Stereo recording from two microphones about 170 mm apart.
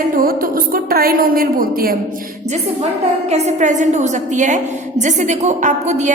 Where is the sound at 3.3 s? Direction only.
45° right (ahead or behind).